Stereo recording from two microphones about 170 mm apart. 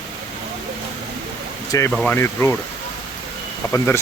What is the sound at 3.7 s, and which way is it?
Speech, 15° left (ahead or behind).